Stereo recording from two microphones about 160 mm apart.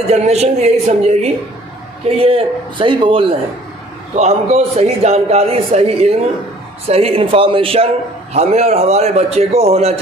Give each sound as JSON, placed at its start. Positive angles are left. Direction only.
{"t": 0.1, "sound": "a man's voice", "side_deg": -45}